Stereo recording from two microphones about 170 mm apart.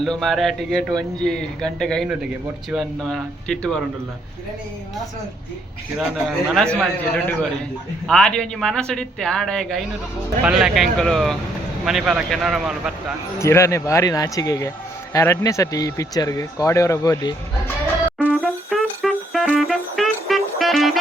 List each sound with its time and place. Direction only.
0.0 s speech: centre (ahead or behind)
6.0 s speech: 5° right (ahead or behind)
8.0 s speech: 5° left (ahead or behind)
13.4 s speech: 15° left (ahead or behind)
18.2 s music: centre (ahead or behind)